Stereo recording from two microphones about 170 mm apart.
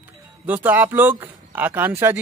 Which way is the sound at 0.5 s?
10° right (ahead or behind).